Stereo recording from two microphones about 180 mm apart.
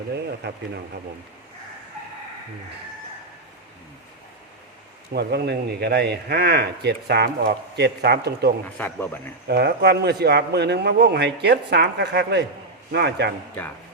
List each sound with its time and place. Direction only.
0.1 s a man's voice: 65° right (ahead or behind)
5.1 s a man's voice: 65° right (ahead or behind)
8.8 s speech: 10° left (ahead or behind)
9.5 s a man's voice: 65° right (ahead or behind)